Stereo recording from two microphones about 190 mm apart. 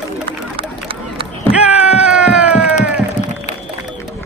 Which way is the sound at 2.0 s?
5° right (ahead or behind).